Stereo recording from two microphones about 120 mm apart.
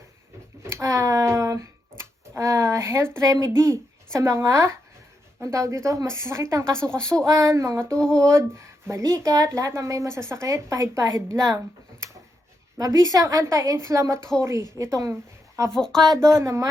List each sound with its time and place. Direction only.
0.6 s a sound: 25° right (ahead or behind)
5.4 s a woman's voice: 25° right (ahead or behind)
7.9 s a sound: 5° left (ahead or behind)
8.2 s a woman's voice: 25° right (ahead or behind)
12.8 s a woman's voice: 25° right (ahead or behind)
15.7 s speech: 5° left (ahead or behind)
16.4 s a woman's voice: 25° right (ahead or behind)